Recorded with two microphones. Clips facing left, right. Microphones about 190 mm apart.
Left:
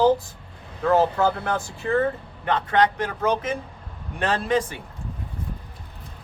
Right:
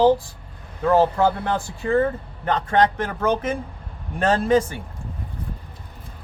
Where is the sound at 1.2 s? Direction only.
20° right (ahead or behind).